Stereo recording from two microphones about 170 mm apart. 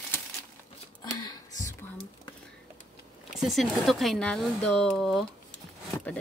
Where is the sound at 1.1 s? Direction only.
20° left (ahead or behind).